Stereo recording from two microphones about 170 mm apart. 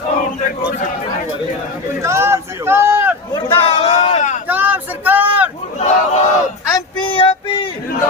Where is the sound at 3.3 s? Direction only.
35° left (ahead or behind).